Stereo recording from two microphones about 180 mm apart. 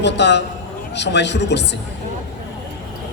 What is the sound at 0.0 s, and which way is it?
Speech, 75° left (ahead or behind).